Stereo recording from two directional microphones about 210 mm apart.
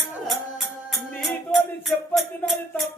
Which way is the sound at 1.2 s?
Centre (ahead or behind).